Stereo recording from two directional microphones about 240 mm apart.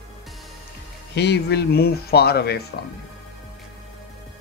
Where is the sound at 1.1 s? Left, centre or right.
Left.